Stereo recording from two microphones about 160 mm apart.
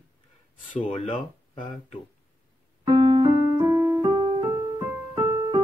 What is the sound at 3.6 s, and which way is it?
Music, 15° right (ahead or behind).